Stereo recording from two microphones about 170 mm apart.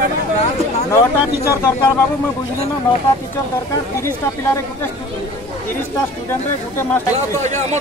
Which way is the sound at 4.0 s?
15° left (ahead or behind).